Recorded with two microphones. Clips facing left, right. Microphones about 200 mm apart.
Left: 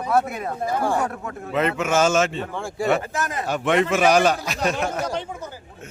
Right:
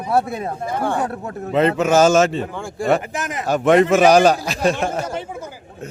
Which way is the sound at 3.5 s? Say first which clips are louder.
Right 7 dB; 40° right (ahead or behind).